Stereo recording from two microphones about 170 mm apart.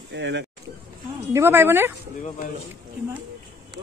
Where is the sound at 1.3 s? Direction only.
15° right (ahead or behind).